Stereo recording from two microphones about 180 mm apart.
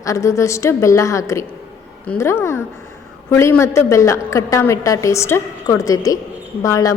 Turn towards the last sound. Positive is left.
turn(degrees=20)  # may be behind; listen again after turning